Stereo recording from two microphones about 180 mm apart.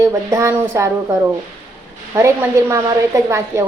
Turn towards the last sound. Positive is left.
turn(degrees=-15)  # may be behind; listen again after turning